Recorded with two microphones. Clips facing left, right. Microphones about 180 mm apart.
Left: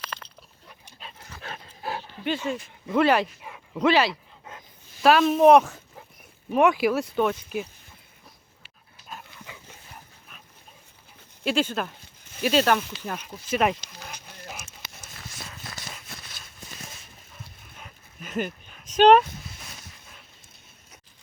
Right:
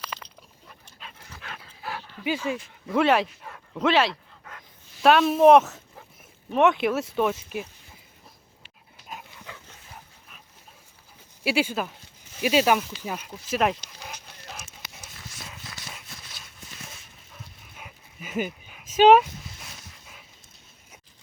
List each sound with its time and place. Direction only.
0.0 s a sound: 10° right (ahead or behind)
0.9 s dog: 35° left (ahead or behind)
2.2 s speech: 10° right (ahead or behind)
4.5 s a sound: 20° left (ahead or behind)
5.0 s speech: centre (ahead or behind)
11.4 s speech: 10° right (ahead or behind)
17.7 s dog: 5° right (ahead or behind)